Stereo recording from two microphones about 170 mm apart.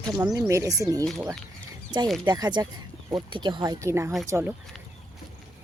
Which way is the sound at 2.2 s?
25° right (ahead or behind).